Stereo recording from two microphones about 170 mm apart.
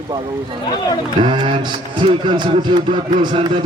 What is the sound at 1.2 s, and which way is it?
Speech, 30° right (ahead or behind).